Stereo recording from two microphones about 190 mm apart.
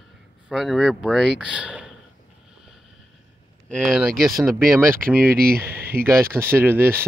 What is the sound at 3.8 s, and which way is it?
Speech, 5° right (ahead or behind).